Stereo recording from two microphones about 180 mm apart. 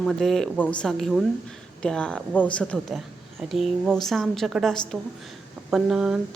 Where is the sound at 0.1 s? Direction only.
Centre (ahead or behind).